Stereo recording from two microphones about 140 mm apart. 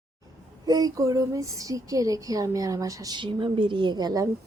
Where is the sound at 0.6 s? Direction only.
25° right (ahead or behind).